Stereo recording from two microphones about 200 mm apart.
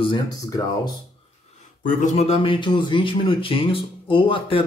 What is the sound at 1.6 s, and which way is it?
Speech, 40° left (ahead or behind).